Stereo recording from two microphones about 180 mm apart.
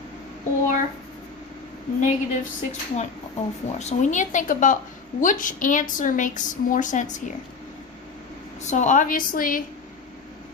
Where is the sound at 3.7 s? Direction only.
40° left (ahead or behind).